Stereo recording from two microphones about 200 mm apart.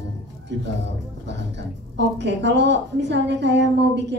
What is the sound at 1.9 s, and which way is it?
A woman's voice, 60° right (ahead or behind).